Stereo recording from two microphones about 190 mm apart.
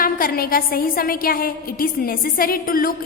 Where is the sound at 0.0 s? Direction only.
50° left (ahead or behind).